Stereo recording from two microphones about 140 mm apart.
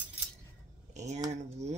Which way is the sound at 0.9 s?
55° right (ahead or behind).